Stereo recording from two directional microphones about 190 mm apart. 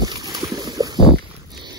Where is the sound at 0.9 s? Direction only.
25° left (ahead or behind).